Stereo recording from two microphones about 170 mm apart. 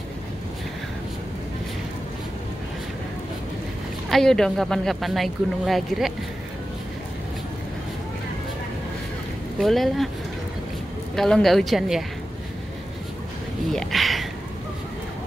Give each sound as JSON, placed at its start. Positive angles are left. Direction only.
{"t": 4.1, "sound": "speech", "side_deg": 5}
{"t": 9.6, "sound": "speech", "side_deg": 0}
{"t": 11.1, "sound": "speech", "side_deg": 0}
{"t": 13.7, "sound": "speech", "side_deg": 0}